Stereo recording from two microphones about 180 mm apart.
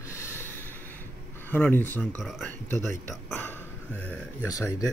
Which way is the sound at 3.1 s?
10° left (ahead or behind).